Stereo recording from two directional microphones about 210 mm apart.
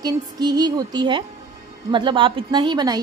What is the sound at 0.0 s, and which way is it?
Music, 20° right (ahead or behind).